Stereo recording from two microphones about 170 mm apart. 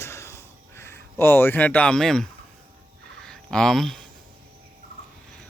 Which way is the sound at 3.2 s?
5° left (ahead or behind).